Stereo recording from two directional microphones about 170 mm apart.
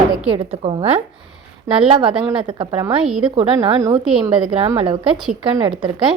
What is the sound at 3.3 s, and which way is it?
Speech, 35° right (ahead or behind).